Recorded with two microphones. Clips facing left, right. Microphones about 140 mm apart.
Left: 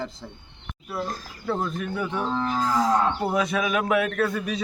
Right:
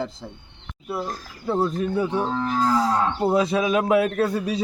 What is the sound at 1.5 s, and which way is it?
A man's voice, 30° right (ahead or behind).